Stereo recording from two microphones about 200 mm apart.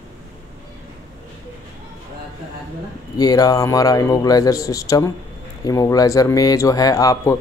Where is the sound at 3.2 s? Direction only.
20° left (ahead or behind).